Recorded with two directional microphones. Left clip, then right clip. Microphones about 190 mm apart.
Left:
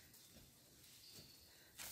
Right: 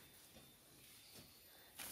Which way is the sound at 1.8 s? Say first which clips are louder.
Right 1 dB; 10° left (ahead or behind).